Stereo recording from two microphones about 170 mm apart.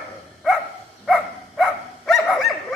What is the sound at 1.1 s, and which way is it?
Dog, centre (ahead or behind).